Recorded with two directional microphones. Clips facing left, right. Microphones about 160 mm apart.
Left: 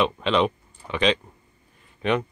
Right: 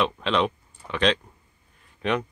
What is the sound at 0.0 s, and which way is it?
Speech, centre (ahead or behind).